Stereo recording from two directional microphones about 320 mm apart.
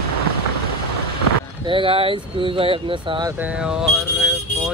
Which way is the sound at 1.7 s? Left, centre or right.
Centre.